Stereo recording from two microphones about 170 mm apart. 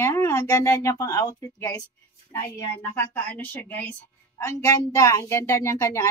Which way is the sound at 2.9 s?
10° left (ahead or behind).